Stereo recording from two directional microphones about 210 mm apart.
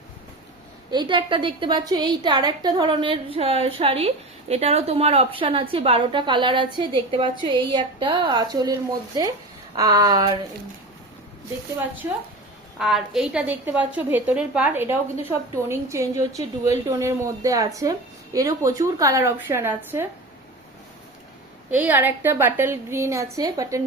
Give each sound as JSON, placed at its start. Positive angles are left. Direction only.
{"t": 0.9, "sound": "a woman's voice", "side_deg": -20}
{"t": 9.7, "sound": "a woman's voice", "side_deg": -15}
{"t": 12.8, "sound": "a woman's voice", "side_deg": 0}
{"t": 21.7, "sound": "a woman's voice", "side_deg": -10}